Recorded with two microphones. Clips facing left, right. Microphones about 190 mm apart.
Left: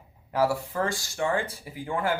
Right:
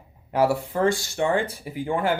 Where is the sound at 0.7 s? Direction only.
20° right (ahead or behind).